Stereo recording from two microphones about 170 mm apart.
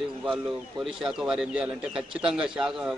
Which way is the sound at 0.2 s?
5° right (ahead or behind).